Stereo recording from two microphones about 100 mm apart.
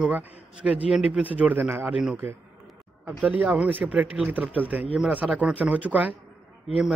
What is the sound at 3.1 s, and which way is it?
Speech, 15° right (ahead or behind).